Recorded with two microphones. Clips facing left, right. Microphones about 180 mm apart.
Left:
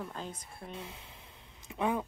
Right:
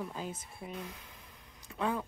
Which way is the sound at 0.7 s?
25° left (ahead or behind).